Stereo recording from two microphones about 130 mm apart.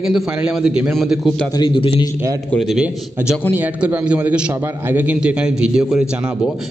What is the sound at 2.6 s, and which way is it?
Speech, 5° right (ahead or behind).